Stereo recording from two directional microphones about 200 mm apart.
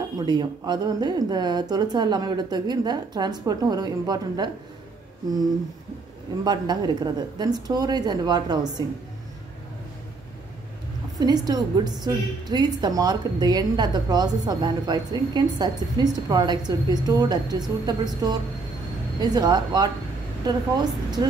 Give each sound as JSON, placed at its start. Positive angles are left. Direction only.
{"t": 0.2, "sound": "a woman's voice", "side_deg": -20}
{"t": 6.4, "sound": "a woman's voice", "side_deg": -20}
{"t": 11.1, "sound": "a woman's voice", "side_deg": -20}